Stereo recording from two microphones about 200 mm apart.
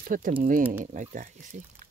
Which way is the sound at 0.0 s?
40° right (ahead or behind).